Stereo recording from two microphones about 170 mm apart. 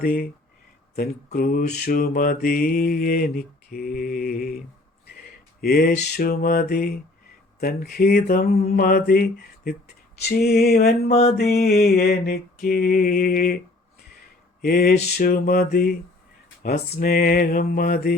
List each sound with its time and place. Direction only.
0.0 s mantra: 65° left (ahead or behind)
5.6 s mantra: 60° left (ahead or behind)
10.2 s a sound: 65° left (ahead or behind)
11.1 s mantra: 35° left (ahead or behind)
11.3 s mantra: 70° left (ahead or behind)
14.6 s mantra: 65° left (ahead or behind)